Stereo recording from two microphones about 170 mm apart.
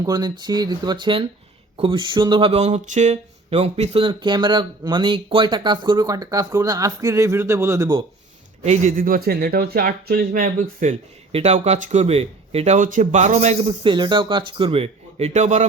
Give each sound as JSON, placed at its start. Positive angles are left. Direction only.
{"t": 0.0, "sound": "speech", "side_deg": -25}
{"t": 8.6, "sound": "speech", "side_deg": -45}
{"t": 11.3, "sound": "speech", "side_deg": -35}
{"t": 13.8, "sound": "speech", "side_deg": -25}